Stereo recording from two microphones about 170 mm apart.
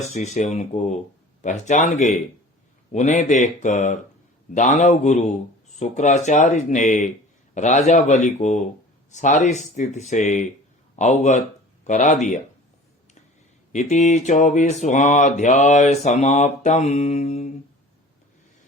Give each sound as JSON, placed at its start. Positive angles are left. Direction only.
{"t": 0.0, "sound": "speech", "side_deg": 40}
{"t": 1.4, "sound": "mantra", "side_deg": 45}
{"t": 13.7, "sound": "mantra", "side_deg": 45}